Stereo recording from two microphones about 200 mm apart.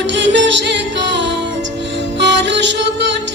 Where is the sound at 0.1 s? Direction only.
65° right (ahead or behind).